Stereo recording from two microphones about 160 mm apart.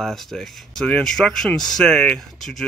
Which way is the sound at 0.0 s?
Centre (ahead or behind).